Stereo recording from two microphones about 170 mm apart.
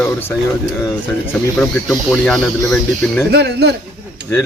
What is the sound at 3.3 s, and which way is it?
Speech, 75° right (ahead or behind).